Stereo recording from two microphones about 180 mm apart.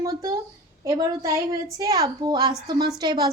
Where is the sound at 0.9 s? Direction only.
20° right (ahead or behind).